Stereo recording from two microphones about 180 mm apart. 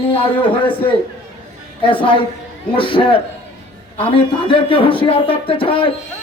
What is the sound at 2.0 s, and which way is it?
A man's voice, 30° left (ahead or behind).